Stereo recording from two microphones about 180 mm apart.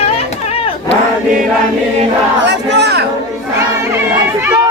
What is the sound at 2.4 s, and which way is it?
Crowd, 70° right (ahead or behind).